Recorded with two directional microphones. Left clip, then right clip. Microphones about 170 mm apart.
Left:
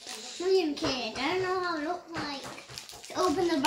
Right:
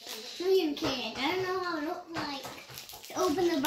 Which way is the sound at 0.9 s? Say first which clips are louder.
Left 1 dB; centre (ahead or behind).